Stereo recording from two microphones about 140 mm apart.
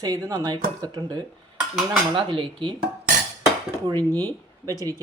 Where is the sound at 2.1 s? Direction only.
35° right (ahead or behind).